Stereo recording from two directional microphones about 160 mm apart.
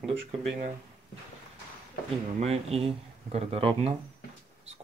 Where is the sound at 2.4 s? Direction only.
40° right (ahead or behind).